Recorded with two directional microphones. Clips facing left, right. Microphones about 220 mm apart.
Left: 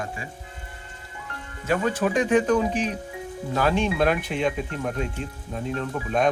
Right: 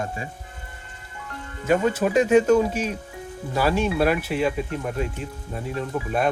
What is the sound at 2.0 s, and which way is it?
Speech, 5° right (ahead or behind).